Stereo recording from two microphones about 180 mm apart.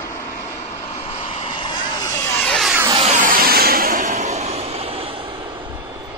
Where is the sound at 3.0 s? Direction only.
50° right (ahead or behind); by 5.2 s 30° right (ahead or behind).